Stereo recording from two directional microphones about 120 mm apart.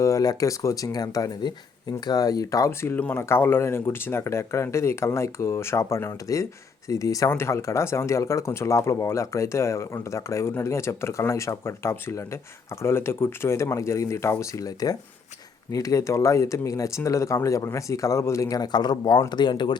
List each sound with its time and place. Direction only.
0.0 s speech: 30° left (ahead or behind)